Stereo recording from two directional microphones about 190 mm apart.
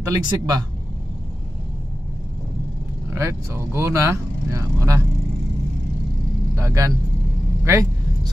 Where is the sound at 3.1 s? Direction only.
15° right (ahead or behind).